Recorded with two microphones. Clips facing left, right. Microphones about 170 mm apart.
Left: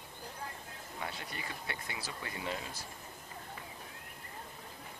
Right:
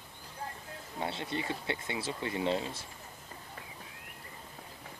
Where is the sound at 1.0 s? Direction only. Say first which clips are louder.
Right 8 dB; 25° right (ahead or behind).